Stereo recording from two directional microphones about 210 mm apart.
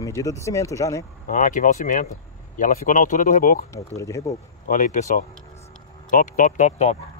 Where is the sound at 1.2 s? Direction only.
40° left (ahead or behind).